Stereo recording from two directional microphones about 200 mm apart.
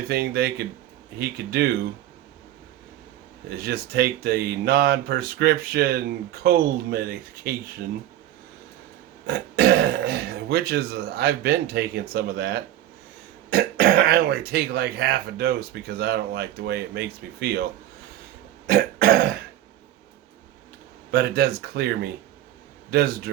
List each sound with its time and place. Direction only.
0.1 s speech: 50° right (ahead or behind)
3.6 s speech: 50° right (ahead or behind)
9.2 s speech: 55° right (ahead or behind)
18.7 s speech: 50° right (ahead or behind)
21.1 s speech: 50° right (ahead or behind)